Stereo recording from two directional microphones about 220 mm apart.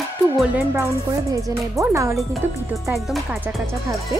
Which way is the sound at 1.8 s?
15° right (ahead or behind).